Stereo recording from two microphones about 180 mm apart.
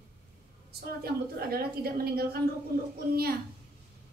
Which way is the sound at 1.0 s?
60° right (ahead or behind).